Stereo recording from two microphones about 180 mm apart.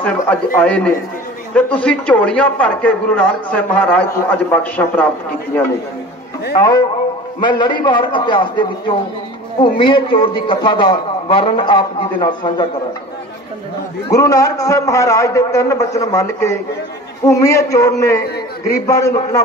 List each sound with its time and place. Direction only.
0.0 s speech: 10° left (ahead or behind)
6.5 s a man's voice: 20° left (ahead or behind)
14.1 s speech: 20° left (ahead or behind)